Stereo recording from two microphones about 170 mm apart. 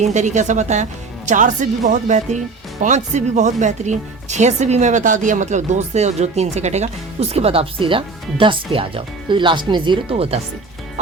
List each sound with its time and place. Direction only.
0.0 s speech: 45° right (ahead or behind)